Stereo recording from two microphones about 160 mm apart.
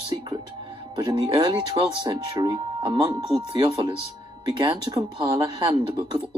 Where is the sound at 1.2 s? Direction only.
20° right (ahead or behind).